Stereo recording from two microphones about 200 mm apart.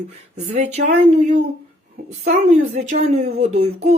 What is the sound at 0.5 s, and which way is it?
A woman's voice, 35° right (ahead or behind).